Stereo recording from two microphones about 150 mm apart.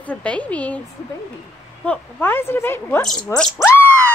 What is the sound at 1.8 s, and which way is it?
A woman's voice, 10° left (ahead or behind).